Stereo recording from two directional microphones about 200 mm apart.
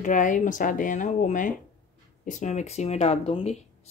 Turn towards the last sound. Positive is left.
turn(degrees=30)  # may be behind; listen again after turning